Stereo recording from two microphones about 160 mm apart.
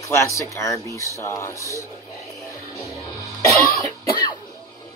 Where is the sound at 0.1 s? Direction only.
20° left (ahead or behind).